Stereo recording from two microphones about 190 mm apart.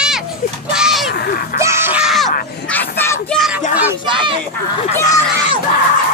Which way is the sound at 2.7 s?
10° left (ahead or behind).